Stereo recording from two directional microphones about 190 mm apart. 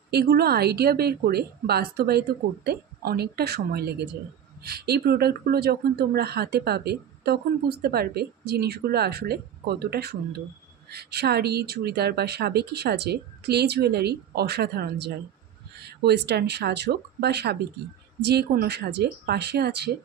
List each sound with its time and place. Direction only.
0.1 s speech: 55° right (ahead or behind)